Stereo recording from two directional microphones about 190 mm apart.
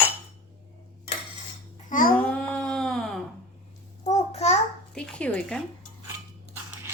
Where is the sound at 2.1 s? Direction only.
5° left (ahead or behind).